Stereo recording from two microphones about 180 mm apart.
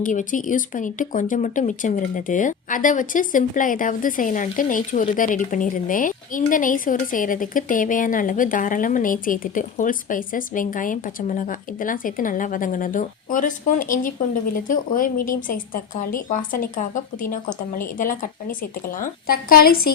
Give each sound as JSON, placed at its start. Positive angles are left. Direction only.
{"t": 0.0, "sound": "speech", "side_deg": 45}